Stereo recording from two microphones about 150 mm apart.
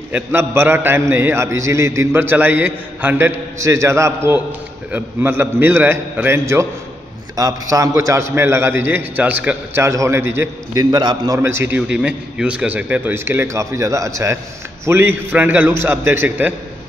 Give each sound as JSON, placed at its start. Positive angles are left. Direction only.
{"t": 0.1, "sound": "a man's voice", "side_deg": -15}
{"t": 10.8, "sound": "a man's voice", "side_deg": -25}